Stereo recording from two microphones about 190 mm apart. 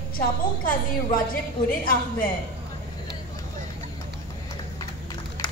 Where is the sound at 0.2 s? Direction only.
45° left (ahead or behind).